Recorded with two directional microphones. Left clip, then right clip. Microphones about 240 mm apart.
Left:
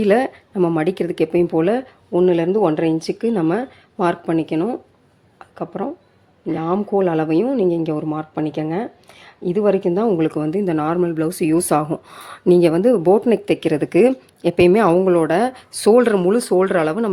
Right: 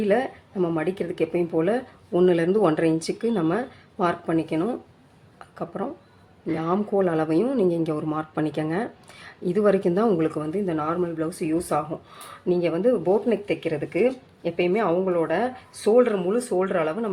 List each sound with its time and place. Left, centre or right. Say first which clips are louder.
0.0 s speech: left 6 dB; left
2.1 s speech: left 4 dB; centre; by 17.1 s left